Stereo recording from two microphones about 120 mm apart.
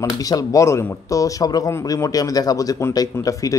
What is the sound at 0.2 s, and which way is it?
Speech, 30° left (ahead or behind).